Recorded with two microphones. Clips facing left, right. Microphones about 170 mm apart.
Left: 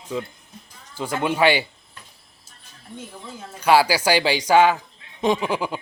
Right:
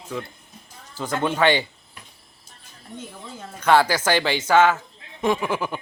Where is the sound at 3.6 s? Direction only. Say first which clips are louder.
Left 1 dB; 10° left (ahead or behind).